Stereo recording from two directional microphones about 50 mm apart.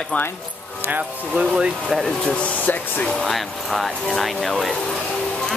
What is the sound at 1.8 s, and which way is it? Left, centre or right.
Speech, centre.